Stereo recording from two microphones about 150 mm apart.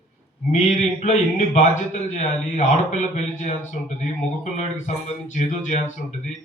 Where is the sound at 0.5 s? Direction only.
50° left (ahead or behind).